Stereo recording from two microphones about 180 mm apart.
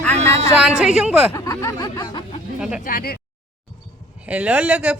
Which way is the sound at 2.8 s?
55° left (ahead or behind).